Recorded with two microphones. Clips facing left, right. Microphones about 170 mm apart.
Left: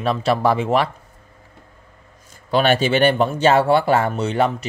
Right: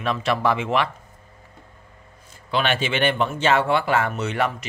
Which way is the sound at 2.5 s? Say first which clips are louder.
Left 6 dB; 40° left (ahead or behind).